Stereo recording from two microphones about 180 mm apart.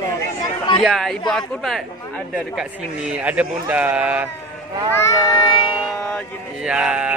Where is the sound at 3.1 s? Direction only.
5° right (ahead or behind).